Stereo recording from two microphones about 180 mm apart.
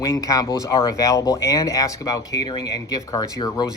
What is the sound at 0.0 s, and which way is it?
Speech, 20° left (ahead or behind).